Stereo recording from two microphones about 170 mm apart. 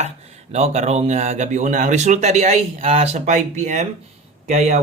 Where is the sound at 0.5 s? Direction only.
40° right (ahead or behind).